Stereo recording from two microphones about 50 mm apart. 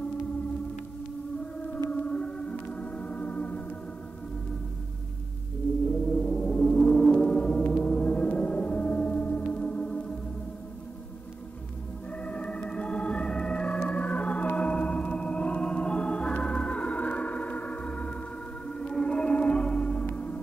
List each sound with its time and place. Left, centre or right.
1.4 s music: centre
6.1 s gong: centre
9.5 s organ: left
12.2 s organ: left
18.7 s music: centre